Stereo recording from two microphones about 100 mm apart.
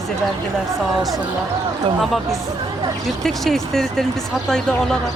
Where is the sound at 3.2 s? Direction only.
5° left (ahead or behind).